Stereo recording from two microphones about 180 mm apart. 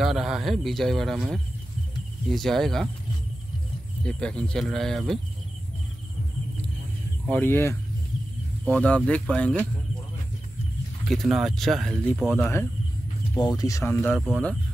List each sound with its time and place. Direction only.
0.0 s speech: centre (ahead or behind)
4.0 s speech: 5° left (ahead or behind)
7.2 s speech: 10° left (ahead or behind)
11.1 s speech: centre (ahead or behind)